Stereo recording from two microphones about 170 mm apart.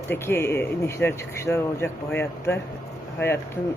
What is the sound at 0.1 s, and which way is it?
Speech, 15° left (ahead or behind).